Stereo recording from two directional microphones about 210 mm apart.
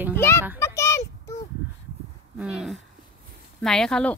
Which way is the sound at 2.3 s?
5° right (ahead or behind).